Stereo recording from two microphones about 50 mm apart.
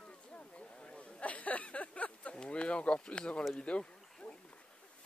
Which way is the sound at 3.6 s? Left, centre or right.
Left.